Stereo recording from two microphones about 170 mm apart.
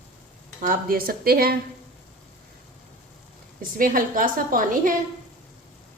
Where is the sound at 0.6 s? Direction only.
55° right (ahead or behind).